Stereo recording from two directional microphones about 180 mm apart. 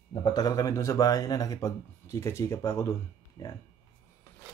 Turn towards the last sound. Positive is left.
turn(degrees=20)  # may be behind; listen again after turning